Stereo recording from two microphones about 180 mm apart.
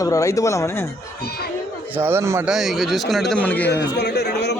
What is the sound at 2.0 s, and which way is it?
Speech, 15° right (ahead or behind).